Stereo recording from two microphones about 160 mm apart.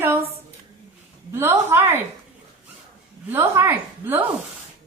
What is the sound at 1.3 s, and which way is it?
Speech, 15° right (ahead or behind).